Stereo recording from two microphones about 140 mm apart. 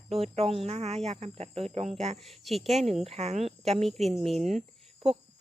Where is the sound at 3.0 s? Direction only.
50° right (ahead or behind).